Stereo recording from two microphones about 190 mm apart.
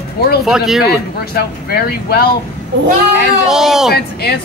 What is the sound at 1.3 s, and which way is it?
Speech, 55° left (ahead or behind).